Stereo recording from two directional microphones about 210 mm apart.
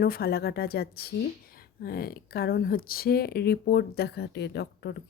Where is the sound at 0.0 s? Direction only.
45° left (ahead or behind).